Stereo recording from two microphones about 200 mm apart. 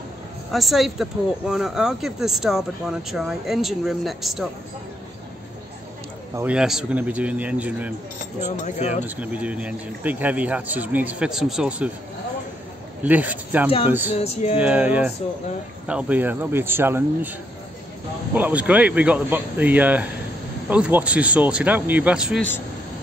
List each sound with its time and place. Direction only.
0.5 s speech: centre (ahead or behind)
6.3 s speech: 5° right (ahead or behind)
8.5 s a sound: 35° left (ahead or behind)
9.0 s speech: 10° right (ahead or behind)
13.0 s speech: 10° right (ahead or behind)
14.1 s a sound: 30° left (ahead or behind)
14.6 s speech: 5° right (ahead or behind)
18.3 s speech: 10° right (ahead or behind)